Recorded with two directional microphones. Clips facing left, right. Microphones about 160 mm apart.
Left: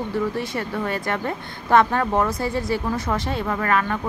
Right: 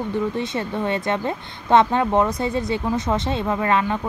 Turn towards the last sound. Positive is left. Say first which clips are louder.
# right 2 dB
turn(degrees=-20)  # may be behind; listen again after turning